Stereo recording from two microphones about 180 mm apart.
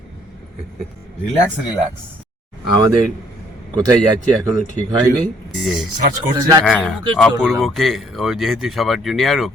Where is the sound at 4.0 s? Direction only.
Centre (ahead or behind).